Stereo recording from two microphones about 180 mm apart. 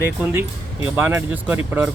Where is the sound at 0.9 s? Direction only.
10° right (ahead or behind).